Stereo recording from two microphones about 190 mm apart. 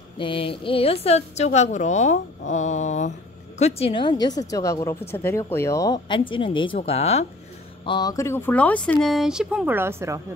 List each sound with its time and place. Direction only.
0.2 s a woman's voice: 25° left (ahead or behind)
7.8 s speech: 20° left (ahead or behind); by 10.2 s 15° right (ahead or behind)